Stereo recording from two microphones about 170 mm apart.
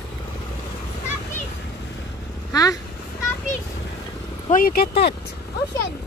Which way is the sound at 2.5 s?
20° left (ahead or behind).